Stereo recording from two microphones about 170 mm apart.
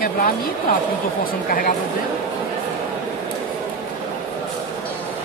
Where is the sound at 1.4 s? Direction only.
60° left (ahead or behind).